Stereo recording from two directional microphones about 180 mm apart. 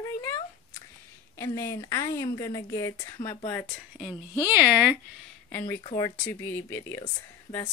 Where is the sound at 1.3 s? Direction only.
15° left (ahead or behind).